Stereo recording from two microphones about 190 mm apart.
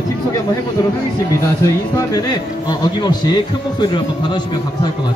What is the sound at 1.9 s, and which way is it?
Speech, 20° left (ahead or behind).